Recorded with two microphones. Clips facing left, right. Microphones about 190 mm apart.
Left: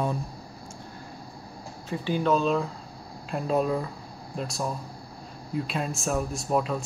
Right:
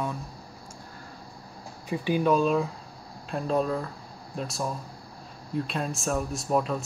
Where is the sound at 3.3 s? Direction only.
5° left (ahead or behind).